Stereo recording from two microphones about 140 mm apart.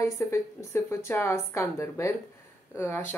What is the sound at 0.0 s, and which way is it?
Speech, 20° left (ahead or behind).